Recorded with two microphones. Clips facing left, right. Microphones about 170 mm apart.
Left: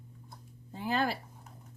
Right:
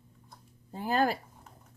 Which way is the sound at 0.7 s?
45° right (ahead or behind).